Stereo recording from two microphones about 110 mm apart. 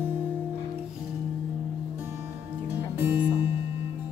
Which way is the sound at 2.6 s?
20° right (ahead or behind).